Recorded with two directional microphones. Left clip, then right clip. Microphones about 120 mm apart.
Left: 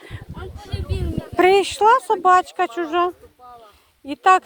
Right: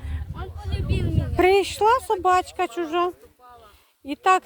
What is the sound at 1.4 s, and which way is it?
Speech, 5° left (ahead or behind).